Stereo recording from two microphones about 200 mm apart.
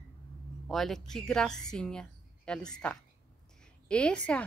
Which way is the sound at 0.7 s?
Centre (ahead or behind).